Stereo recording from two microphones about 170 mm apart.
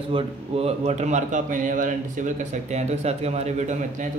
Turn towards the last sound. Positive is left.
turn(degrees=-45)  # may be behind; listen again after turning